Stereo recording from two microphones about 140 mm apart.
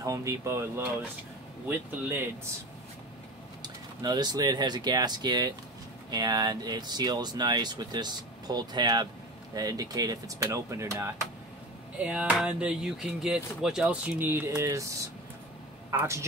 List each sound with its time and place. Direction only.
0.0 s speech: 25° right (ahead or behind)
3.6 s speech: 30° right (ahead or behind)
12.0 s speech: 10° right (ahead or behind)
16.0 s speech: 20° right (ahead or behind)